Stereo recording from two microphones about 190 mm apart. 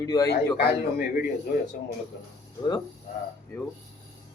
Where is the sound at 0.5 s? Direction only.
55° left (ahead or behind).